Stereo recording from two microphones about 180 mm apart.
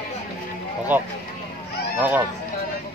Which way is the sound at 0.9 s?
10° right (ahead or behind).